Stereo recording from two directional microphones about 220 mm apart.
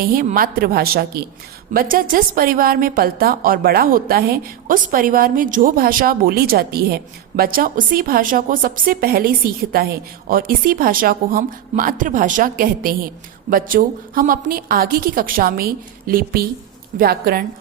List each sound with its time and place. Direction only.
0.0 s a woman's voice: 40° right (ahead or behind)